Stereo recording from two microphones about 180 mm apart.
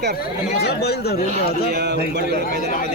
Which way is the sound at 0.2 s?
65° left (ahead or behind).